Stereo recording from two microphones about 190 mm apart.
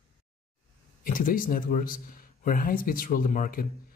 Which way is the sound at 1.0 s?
45° left (ahead or behind).